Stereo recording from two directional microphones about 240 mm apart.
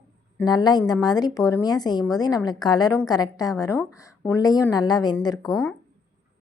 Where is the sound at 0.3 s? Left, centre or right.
Centre.